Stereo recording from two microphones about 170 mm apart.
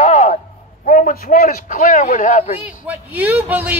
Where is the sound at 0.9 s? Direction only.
50° left (ahead or behind).